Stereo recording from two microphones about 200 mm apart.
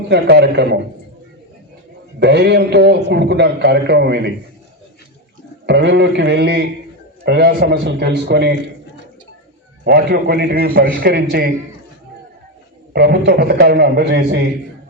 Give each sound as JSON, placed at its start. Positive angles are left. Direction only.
{"t": 0.1, "sound": "a man's voice", "side_deg": -55}
{"t": 2.1, "sound": "a man's voice", "side_deg": -55}
{"t": 5.6, "sound": "a man's voice", "side_deg": -60}
{"t": 9.8, "sound": "a man's voice", "side_deg": -55}
{"t": 12.9, "sound": "a man's voice", "side_deg": -55}